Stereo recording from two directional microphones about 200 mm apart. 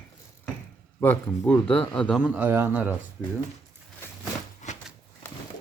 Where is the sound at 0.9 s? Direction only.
10° left (ahead or behind); by 2.9 s 10° right (ahead or behind).